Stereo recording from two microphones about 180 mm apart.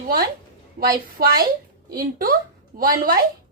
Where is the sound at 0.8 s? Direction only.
45° right (ahead or behind).